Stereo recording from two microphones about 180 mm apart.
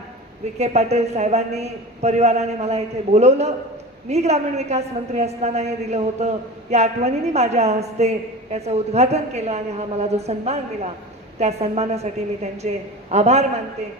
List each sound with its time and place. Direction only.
0.6 s a woman's voice: 35° right (ahead or behind)